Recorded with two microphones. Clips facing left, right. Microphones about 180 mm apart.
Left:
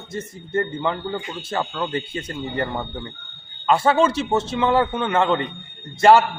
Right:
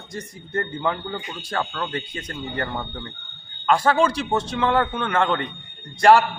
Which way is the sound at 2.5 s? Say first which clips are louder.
Left 3 dB; centre (ahead or behind).